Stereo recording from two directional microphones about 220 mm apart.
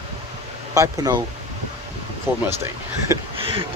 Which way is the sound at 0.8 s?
15° right (ahead or behind).